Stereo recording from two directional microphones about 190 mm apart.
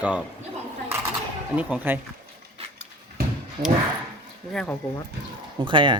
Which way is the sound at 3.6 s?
25° right (ahead or behind).